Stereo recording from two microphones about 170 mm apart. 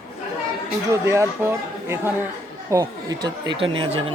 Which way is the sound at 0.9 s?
15° right (ahead or behind).